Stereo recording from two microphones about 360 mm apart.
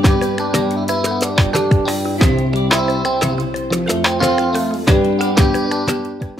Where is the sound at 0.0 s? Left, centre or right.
Centre.